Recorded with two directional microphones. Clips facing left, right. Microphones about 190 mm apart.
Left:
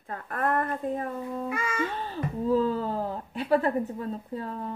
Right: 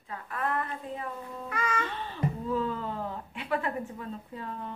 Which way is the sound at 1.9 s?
40° left (ahead or behind).